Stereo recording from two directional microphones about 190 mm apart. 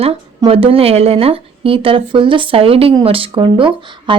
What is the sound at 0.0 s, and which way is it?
A woman's voice, 30° right (ahead or behind).